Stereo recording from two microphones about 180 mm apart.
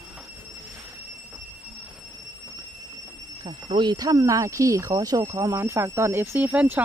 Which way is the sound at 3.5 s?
25° right (ahead or behind).